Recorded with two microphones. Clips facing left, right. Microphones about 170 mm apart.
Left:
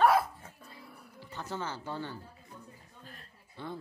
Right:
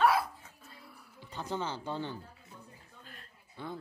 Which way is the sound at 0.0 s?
50° left (ahead or behind).